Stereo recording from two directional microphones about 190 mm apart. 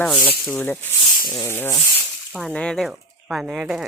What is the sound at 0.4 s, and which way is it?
Speech, 5° left (ahead or behind).